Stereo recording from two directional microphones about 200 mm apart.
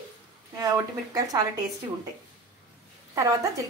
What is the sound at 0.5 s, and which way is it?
Speech, 15° right (ahead or behind).